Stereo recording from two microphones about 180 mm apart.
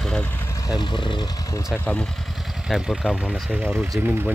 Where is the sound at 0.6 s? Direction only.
25° left (ahead or behind).